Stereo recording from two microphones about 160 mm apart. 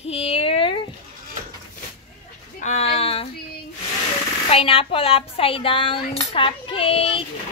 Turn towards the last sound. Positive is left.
turn(degrees=35)  # may be behind; listen again after turning